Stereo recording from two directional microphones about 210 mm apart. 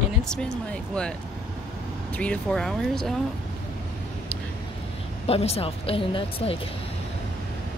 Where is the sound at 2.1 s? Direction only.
5° left (ahead or behind).